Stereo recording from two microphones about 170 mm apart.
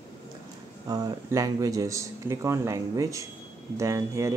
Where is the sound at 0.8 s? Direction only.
20° right (ahead or behind).